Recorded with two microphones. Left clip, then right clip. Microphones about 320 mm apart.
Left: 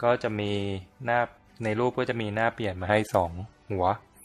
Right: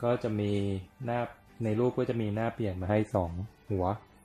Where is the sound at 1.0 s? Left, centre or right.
Left.